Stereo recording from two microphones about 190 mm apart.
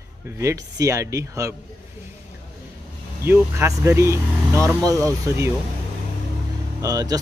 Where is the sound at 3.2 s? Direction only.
15° right (ahead or behind).